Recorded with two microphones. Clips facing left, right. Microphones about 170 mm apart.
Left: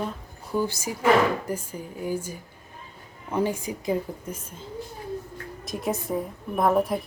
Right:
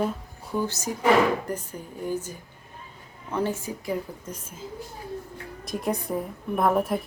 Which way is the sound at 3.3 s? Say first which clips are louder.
Left 2 dB; 15° left (ahead or behind).